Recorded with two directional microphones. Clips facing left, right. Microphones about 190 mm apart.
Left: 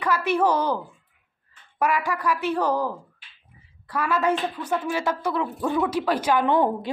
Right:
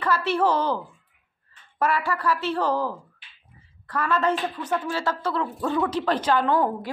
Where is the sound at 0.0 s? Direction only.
15° left (ahead or behind).